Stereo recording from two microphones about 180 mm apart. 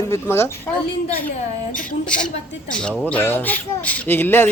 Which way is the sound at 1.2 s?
50° left (ahead or behind).